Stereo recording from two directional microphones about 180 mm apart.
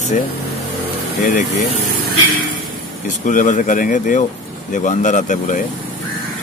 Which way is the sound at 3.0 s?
45° left (ahead or behind).